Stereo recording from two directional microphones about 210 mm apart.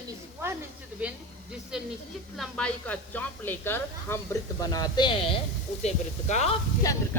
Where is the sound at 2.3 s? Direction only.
Centre (ahead or behind); by 6.5 s 30° left (ahead or behind).